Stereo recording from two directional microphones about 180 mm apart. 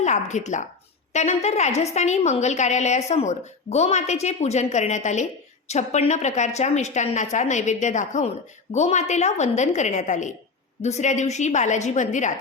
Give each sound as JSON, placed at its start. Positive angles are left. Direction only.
{"t": 0.0, "sound": "a woman's voice", "side_deg": 40}